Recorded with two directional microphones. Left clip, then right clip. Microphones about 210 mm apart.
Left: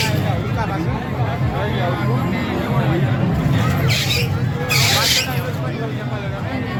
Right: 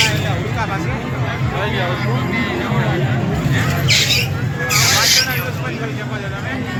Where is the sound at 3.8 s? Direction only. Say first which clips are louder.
Right 7 dB; 50° left (ahead or behind).